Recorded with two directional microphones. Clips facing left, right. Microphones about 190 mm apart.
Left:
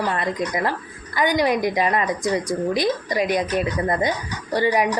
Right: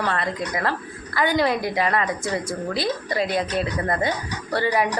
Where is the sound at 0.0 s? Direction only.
15° left (ahead or behind).